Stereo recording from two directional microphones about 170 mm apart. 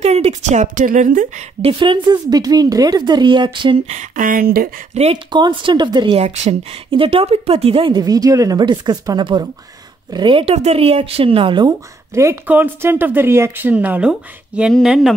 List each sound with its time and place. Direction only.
0.0 s a woman's voice: 40° right (ahead or behind)
1.6 s speech: 30° right (ahead or behind)
3.9 s speech: 50° right (ahead or behind)
4.9 s speech: 40° right (ahead or behind)
5.3 s speech: 30° right (ahead or behind)
6.2 s speech: 35° right (ahead or behind)
12.1 s speech: 15° right (ahead or behind); by 15.1 s centre (ahead or behind)